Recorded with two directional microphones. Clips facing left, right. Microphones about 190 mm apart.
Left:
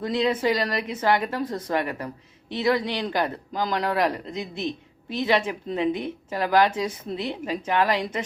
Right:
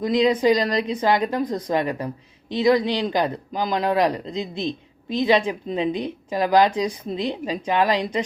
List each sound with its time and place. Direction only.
0.0 s a man's voice: 15° right (ahead or behind)